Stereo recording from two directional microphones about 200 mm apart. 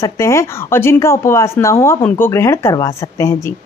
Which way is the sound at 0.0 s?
15° left (ahead or behind).